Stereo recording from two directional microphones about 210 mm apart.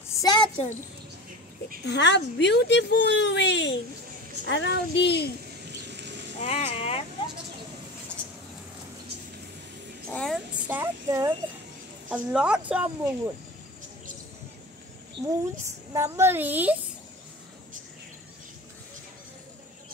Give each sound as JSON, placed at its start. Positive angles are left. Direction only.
{"t": 0.2, "sound": "a sound", "side_deg": 20}
{"t": 1.9, "sound": "speech", "side_deg": 55}
{"t": 5.7, "sound": "a sound", "side_deg": -55}
{"t": 6.4, "sound": "speech", "side_deg": 30}
{"t": 10.1, "sound": "a woman's voice", "side_deg": 5}
{"t": 10.7, "sound": "a woman's voice", "side_deg": -10}
{"t": 15.1, "sound": "a woman's voice", "side_deg": -15}